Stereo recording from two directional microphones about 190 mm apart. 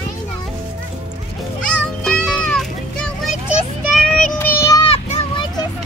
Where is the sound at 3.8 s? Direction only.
Centre (ahead or behind).